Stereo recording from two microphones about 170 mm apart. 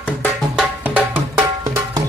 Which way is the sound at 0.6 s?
10° right (ahead or behind).